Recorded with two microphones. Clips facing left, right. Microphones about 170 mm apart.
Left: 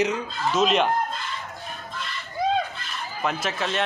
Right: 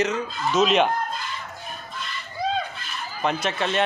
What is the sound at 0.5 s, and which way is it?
Speech, 5° right (ahead or behind).